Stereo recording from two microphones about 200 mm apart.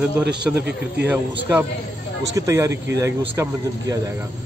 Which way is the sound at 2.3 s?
15° right (ahead or behind).